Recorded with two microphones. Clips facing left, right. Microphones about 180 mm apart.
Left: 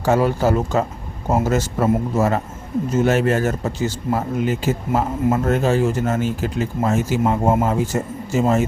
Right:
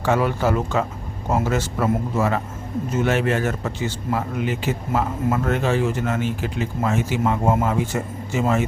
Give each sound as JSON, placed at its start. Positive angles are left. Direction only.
{"t": 0.0, "sound": "a man's voice", "side_deg": 40}
{"t": 7.4, "sound": "a man's voice", "side_deg": 25}
{"t": 7.7, "sound": "a man's voice", "side_deg": 40}